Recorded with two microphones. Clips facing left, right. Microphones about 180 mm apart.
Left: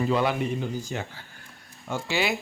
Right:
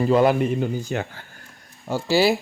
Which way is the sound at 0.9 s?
60° right (ahead or behind).